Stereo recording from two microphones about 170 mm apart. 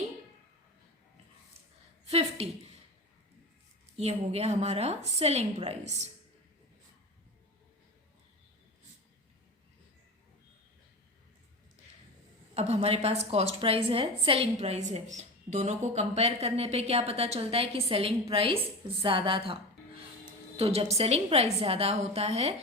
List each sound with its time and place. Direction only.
2.0 s a woman's voice: 35° right (ahead or behind)
3.9 s a woman's voice: 35° right (ahead or behind)
12.5 s a woman's voice: 40° right (ahead or behind)